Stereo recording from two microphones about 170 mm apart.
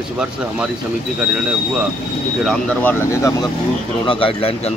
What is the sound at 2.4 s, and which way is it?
Speech, 5° left (ahead or behind).